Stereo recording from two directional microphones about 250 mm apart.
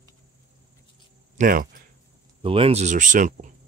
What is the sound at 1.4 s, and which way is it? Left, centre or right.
Speech, right.